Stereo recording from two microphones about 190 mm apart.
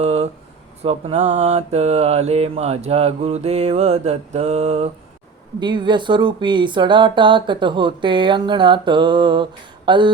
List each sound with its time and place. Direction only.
0.0 s a sound: 35° right (ahead or behind)
0.8 s mantra: 35° right (ahead or behind)
5.5 s speech: 25° right (ahead or behind)